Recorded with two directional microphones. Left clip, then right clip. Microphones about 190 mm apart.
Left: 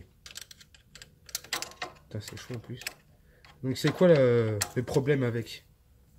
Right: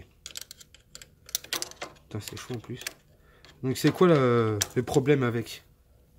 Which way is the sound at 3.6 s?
35° right (ahead or behind).